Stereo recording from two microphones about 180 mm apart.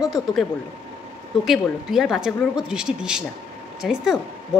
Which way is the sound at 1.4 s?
Centre (ahead or behind).